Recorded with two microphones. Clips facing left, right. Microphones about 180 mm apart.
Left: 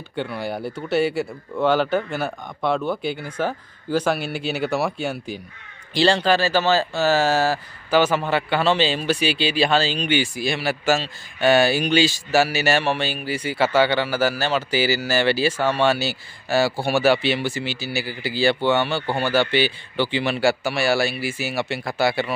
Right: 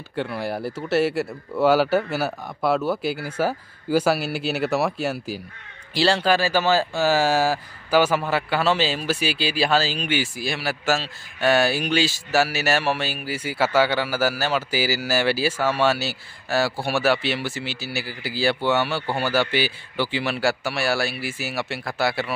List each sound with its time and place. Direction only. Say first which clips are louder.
0.1 s speech: even; centre (ahead or behind)